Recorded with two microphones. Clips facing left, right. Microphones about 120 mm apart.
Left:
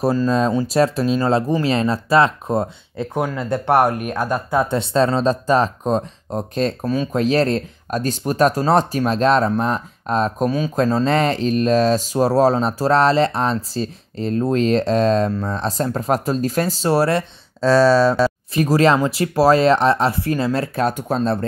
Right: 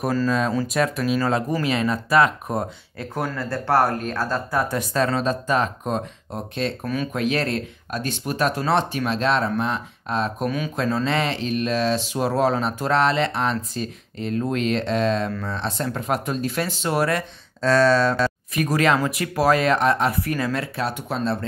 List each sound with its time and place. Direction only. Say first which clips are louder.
0.3 s speech: left 4 dB; 30° left (ahead or behind)
20.6 s speech: left 6 dB; 45° left (ahead or behind)